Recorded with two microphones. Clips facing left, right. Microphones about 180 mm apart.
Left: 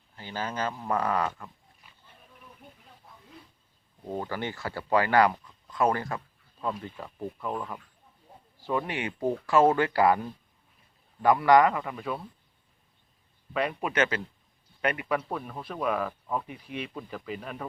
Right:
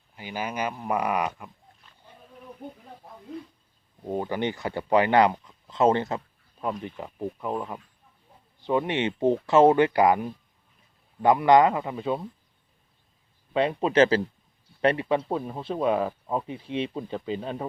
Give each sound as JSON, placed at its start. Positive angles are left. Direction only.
{"t": 0.2, "sound": "speech", "side_deg": -15}
{"t": 4.0, "sound": "speech", "side_deg": -15}
{"t": 13.5, "sound": "speech", "side_deg": -25}